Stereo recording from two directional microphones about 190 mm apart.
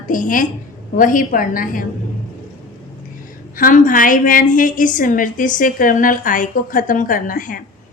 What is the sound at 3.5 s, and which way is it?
A woman's voice, 45° left (ahead or behind).